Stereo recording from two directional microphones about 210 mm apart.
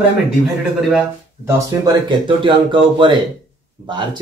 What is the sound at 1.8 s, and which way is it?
Speech, 20° right (ahead or behind).